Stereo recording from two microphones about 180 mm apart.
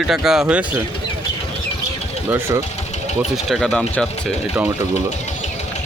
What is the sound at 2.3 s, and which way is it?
Speech, 15° right (ahead or behind).